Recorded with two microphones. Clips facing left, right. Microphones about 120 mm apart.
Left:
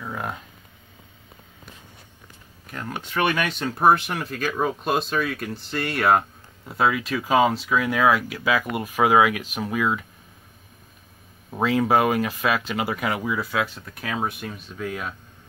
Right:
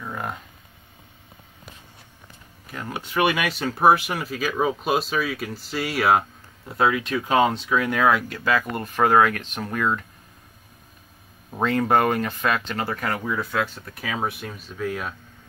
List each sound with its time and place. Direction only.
0.0 s a sound: centre (ahead or behind)
2.6 s speech: 5° right (ahead or behind)
11.5 s speech: centre (ahead or behind)